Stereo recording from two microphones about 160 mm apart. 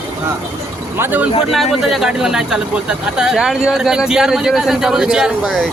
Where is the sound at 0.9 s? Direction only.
10° right (ahead or behind).